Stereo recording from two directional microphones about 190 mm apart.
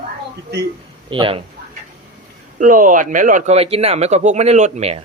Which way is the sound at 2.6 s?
45° right (ahead or behind).